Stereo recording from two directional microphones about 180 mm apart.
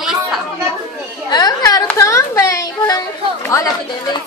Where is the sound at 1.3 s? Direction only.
20° left (ahead or behind).